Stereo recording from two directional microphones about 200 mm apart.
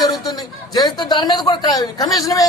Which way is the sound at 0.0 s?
20° left (ahead or behind).